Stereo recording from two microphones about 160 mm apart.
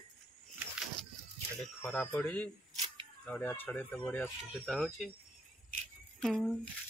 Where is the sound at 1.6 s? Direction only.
5° left (ahead or behind).